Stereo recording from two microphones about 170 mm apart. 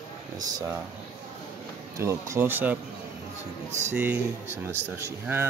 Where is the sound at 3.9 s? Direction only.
10° right (ahead or behind).